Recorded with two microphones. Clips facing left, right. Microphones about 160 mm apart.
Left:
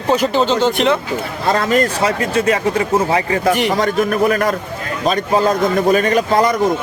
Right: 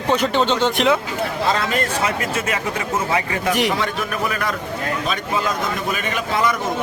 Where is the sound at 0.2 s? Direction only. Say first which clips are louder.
Left 3 dB; centre (ahead or behind).